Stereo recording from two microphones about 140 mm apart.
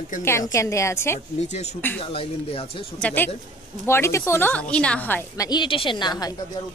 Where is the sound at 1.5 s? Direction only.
50° left (ahead or behind).